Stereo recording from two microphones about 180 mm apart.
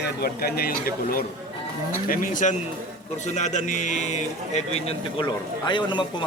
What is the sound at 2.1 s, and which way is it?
A man's voice, 45° left (ahead or behind).